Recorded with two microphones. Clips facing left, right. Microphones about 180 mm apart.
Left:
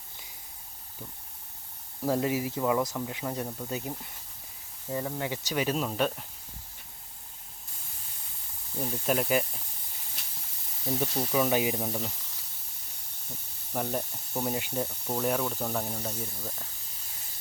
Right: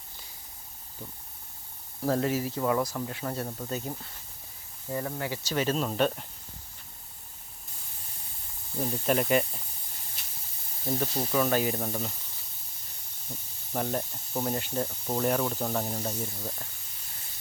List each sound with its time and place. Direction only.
2.0 s speech: 15° left (ahead or behind)
5.2 s speech: 15° left (ahead or behind); by 6.2 s centre (ahead or behind)
8.7 s speech: 10° right (ahead or behind)
9.0 s speech: centre (ahead or behind)
10.8 s speech: 5° left (ahead or behind)
13.7 s speech: 5° left (ahead or behind)